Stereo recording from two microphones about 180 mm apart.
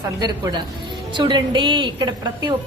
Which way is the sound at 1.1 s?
25° right (ahead or behind).